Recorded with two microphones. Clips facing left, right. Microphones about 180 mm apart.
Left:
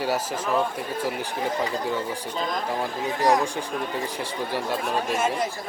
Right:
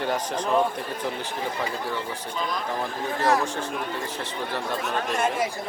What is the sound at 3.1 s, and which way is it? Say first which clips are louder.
Speech: left 2 dB; 15° left (ahead or behind).